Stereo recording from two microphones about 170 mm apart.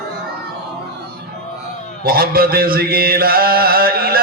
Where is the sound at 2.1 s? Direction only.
65° right (ahead or behind).